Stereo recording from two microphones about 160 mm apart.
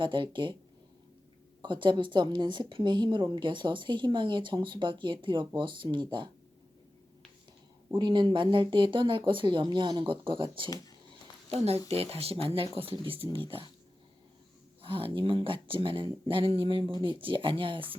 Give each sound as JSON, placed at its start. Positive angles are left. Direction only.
{"t": 0.0, "sound": "a woman's voice", "side_deg": -30}
{"t": 1.6, "sound": "a woman's voice", "side_deg": -30}
{"t": 7.9, "sound": "speech", "side_deg": -30}
{"t": 14.8, "sound": "speech", "side_deg": -35}